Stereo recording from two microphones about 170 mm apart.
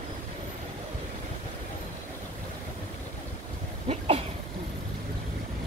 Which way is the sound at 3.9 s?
35° right (ahead or behind).